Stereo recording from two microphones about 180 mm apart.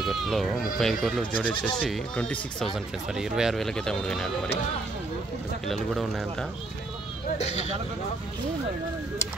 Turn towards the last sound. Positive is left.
turn(degrees=35)  # may be behind; listen again after turning